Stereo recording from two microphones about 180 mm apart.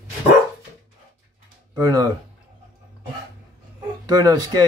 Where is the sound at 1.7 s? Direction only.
20° right (ahead or behind).